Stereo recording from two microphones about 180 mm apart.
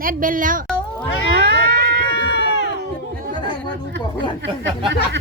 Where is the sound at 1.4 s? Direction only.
65° right (ahead or behind).